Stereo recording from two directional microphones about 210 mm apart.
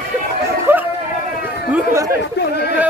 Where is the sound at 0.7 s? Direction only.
10° right (ahead or behind).